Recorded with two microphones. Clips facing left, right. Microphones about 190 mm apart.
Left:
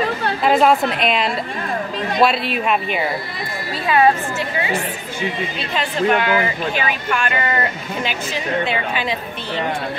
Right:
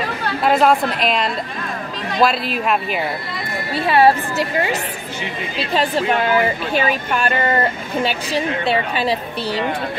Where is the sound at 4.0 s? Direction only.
35° right (ahead or behind).